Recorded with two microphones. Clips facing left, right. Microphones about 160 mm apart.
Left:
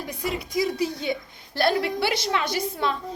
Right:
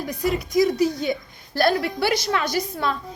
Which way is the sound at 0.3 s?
30° left (ahead or behind).